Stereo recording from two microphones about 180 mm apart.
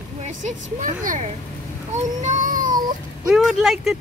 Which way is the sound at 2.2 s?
45° right (ahead or behind).